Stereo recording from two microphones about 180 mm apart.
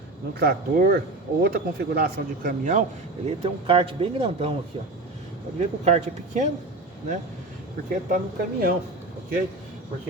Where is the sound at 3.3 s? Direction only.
30° right (ahead or behind).